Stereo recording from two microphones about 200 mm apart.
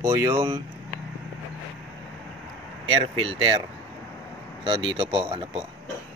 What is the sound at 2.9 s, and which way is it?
Speech, 30° right (ahead or behind).